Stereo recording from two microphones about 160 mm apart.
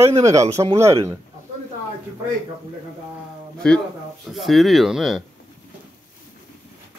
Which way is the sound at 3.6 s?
5° left (ahead or behind).